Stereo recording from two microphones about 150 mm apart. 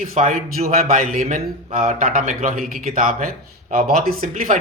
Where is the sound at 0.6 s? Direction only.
45° right (ahead or behind).